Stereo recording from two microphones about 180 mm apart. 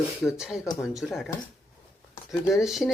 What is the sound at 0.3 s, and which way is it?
Speech, 5° right (ahead or behind).